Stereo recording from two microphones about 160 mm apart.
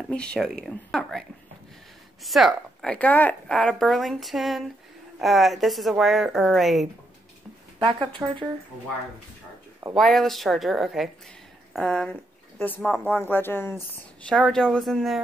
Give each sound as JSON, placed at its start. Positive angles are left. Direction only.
{"t": 0.1, "sound": "speech", "side_deg": 5}
{"t": 2.2, "sound": "speech", "side_deg": 0}
{"t": 7.8, "sound": "speech", "side_deg": -30}
{"t": 9.9, "sound": "a woman's voice", "side_deg": 0}
{"t": 14.3, "sound": "speech", "side_deg": 5}